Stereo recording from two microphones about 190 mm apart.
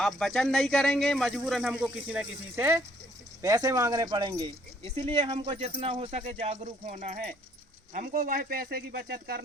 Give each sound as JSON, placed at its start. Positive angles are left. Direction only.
{"t": 0.0, "sound": "speech", "side_deg": 0}
{"t": 7.9, "sound": "speech", "side_deg": -50}